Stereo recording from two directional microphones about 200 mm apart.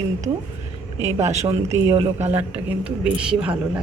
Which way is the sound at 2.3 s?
10° right (ahead or behind).